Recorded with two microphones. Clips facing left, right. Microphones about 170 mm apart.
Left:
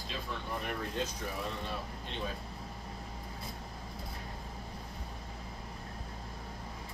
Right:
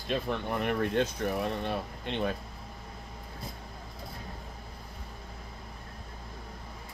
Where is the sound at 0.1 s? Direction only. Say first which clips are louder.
Right 9 dB; 65° right (ahead or behind).